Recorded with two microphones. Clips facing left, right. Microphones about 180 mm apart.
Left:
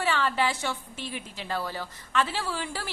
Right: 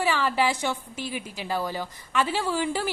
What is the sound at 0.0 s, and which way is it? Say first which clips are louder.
A woman's voice: right 2 dB; 10° right (ahead or behind).